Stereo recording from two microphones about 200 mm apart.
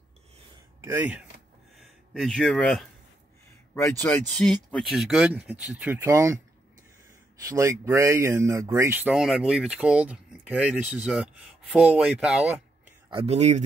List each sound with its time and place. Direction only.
0.7 s speech: 10° right (ahead or behind)
1.8 s speech: centre (ahead or behind)
4.0 s speech: 5° left (ahead or behind); by 6.4 s 15° right (ahead or behind)
7.4 s speech: 15° right (ahead or behind)
13.1 s speech: 30° right (ahead or behind)